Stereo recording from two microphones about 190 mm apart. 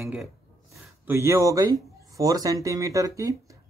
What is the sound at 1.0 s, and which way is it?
A man's voice, 15° right (ahead or behind).